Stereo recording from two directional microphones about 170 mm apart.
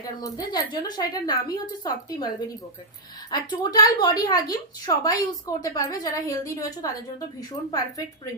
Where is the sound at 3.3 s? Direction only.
25° left (ahead or behind).